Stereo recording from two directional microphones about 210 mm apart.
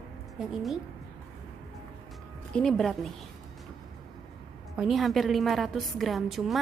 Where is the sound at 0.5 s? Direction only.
Centre (ahead or behind).